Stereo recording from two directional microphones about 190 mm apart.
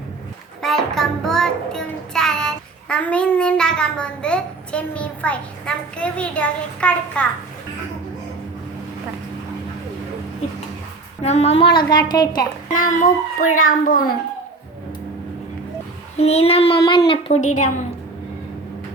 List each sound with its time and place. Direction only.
0.6 s child singing: centre (ahead or behind)
11.2 s a woman's voice: 35° left (ahead or behind); by 12.5 s 20° left (ahead or behind)
12.7 s a child's voice: 45° left (ahead or behind)
16.1 s a child's voice: 35° left (ahead or behind)